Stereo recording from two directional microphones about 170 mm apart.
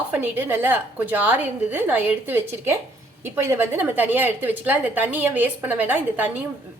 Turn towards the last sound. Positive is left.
turn(degrees=-10)  # may be behind; listen again after turning